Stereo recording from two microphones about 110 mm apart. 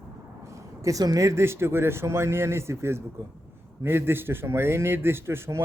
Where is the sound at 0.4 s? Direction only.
30° right (ahead or behind).